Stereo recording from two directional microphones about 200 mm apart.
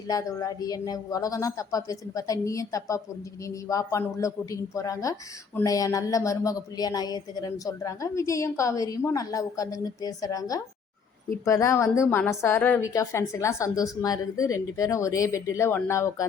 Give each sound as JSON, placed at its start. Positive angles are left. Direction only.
{"t": 0.1, "sound": "speech", "side_deg": 15}